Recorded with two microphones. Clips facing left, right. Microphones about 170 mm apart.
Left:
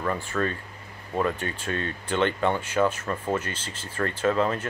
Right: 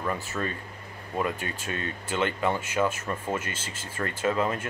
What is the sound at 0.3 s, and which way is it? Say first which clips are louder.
Speech: left 4 dB; 15° right (ahead or behind).